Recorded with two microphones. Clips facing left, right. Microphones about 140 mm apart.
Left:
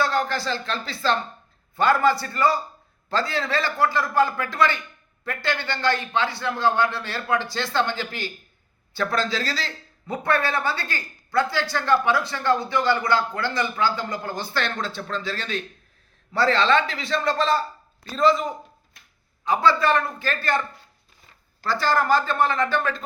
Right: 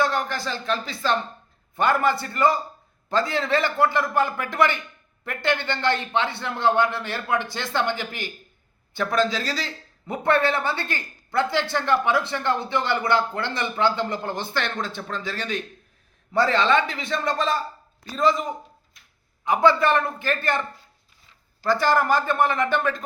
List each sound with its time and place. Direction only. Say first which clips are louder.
0.0 s speech: left 1 dB; 20° right (ahead or behind)
19.5 s speech: right 1 dB; 20° right (ahead or behind)
21.6 s speech: right 2 dB; 15° right (ahead or behind)